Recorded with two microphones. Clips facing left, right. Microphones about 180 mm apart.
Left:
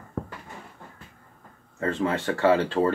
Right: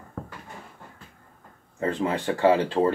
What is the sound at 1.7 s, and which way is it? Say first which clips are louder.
Speech: even; 15° right (ahead or behind).